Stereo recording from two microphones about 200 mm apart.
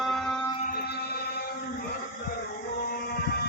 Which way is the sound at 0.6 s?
50° left (ahead or behind).